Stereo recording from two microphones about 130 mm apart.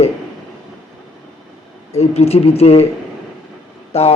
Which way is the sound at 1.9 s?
55° left (ahead or behind).